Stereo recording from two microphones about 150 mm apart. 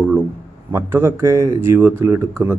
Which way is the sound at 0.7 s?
15° right (ahead or behind).